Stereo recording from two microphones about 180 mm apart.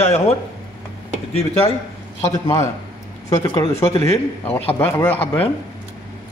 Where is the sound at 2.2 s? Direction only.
20° left (ahead or behind).